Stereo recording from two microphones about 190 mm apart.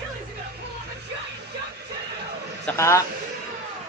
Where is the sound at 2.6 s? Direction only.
15° left (ahead or behind).